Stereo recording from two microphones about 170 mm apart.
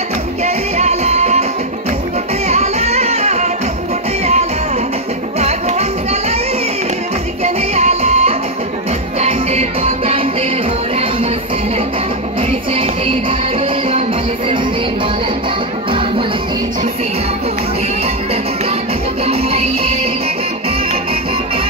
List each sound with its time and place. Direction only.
0.7 s music: 40° right (ahead or behind)
2.4 s music: 40° right (ahead or behind)
5.4 s music: 40° right (ahead or behind)
7.4 s music: 40° right (ahead or behind)
12.4 s music: 35° right (ahead or behind)
19.2 s music: 35° right (ahead or behind)